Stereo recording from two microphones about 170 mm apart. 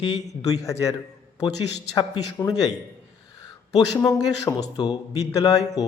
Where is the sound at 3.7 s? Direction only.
20° left (ahead or behind).